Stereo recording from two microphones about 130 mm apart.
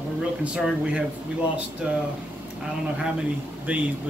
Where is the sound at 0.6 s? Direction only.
Centre (ahead or behind).